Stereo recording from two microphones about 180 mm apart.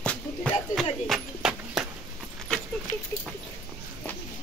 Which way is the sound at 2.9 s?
45° left (ahead or behind).